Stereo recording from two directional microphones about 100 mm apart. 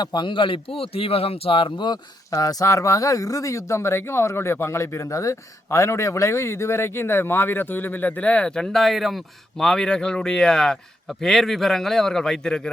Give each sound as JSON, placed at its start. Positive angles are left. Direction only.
{"t": 0.0, "sound": "a man's voice", "side_deg": 45}
{"t": 2.3, "sound": "speech", "side_deg": 35}